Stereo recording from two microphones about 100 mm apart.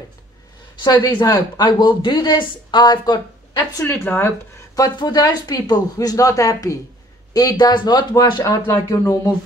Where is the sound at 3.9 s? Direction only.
25° left (ahead or behind).